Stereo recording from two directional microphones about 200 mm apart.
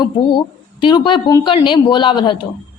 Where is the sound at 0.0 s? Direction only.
25° left (ahead or behind).